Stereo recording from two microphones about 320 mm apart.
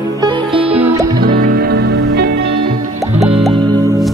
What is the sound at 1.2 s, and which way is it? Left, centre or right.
Music, right.